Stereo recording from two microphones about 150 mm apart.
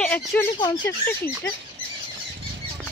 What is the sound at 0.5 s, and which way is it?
Speech, 30° left (ahead or behind).